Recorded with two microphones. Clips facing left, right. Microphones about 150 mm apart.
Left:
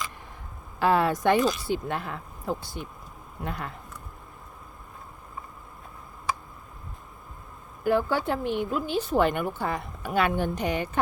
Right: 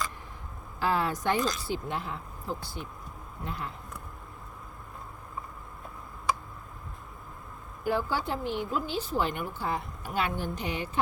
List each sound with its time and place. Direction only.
0.8 s a woman's voice: 65° left (ahead or behind)
7.9 s a woman's voice: 55° left (ahead or behind)